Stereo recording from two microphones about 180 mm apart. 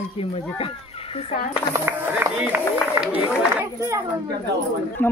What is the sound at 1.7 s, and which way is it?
Speech, 10° right (ahead or behind).